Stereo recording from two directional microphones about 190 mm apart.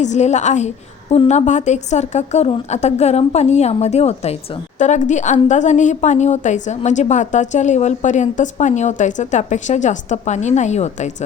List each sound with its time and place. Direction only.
0.0 s a woman's voice: 35° left (ahead or behind)